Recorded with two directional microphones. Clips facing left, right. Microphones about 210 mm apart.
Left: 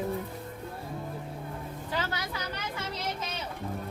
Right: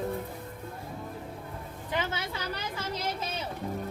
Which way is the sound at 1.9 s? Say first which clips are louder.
Right 2 dB; 20° right (ahead or behind).